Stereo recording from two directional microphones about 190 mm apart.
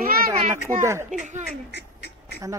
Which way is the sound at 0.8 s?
15° right (ahead or behind).